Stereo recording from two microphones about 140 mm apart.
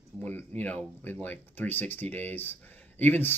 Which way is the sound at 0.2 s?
15° left (ahead or behind).